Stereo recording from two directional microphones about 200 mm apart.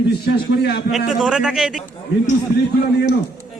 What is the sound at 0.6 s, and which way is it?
Speech, 55° left (ahead or behind).